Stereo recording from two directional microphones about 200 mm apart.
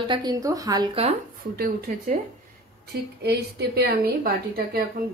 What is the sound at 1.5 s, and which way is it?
Speech, 45° right (ahead or behind).